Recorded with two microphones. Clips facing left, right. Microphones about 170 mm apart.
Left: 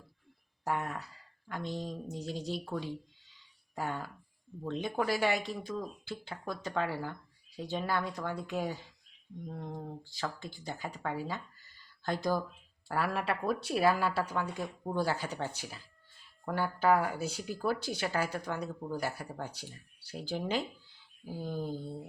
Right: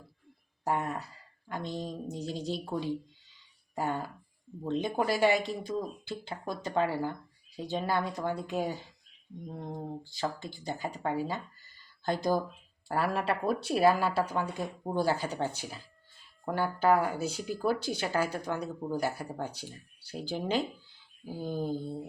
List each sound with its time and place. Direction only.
0.6 s speech: 30° right (ahead or behind)